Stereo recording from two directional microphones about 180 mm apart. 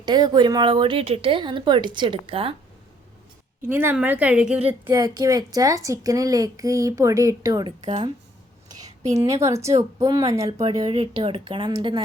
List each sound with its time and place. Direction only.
0.0 s a woman's voice: 25° right (ahead or behind)
3.7 s speech: 10° right (ahead or behind)
4.9 s a woman's voice: 20° right (ahead or behind)
7.9 s speech: 30° right (ahead or behind)
9.1 s a woman's voice: 15° right (ahead or behind)